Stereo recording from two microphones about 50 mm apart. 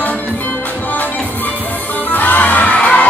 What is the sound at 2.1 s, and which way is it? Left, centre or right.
Music, left.